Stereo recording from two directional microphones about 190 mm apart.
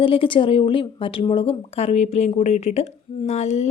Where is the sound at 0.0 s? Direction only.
30° left (ahead or behind).